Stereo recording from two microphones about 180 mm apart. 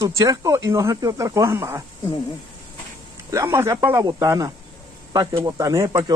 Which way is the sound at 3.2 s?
15° right (ahead or behind).